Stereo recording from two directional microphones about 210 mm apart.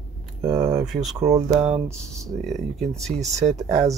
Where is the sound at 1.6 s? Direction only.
Centre (ahead or behind).